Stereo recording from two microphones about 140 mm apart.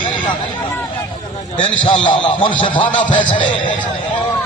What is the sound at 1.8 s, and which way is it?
A man's voice, 35° left (ahead or behind).